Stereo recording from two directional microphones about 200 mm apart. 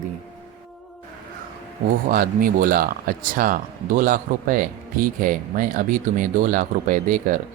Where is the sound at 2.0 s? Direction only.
45° right (ahead or behind).